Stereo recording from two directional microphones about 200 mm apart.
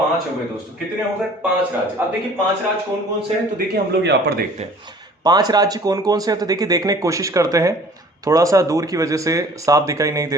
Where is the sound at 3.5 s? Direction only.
55° right (ahead or behind).